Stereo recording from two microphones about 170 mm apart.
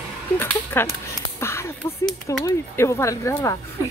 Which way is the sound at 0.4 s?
10° left (ahead or behind).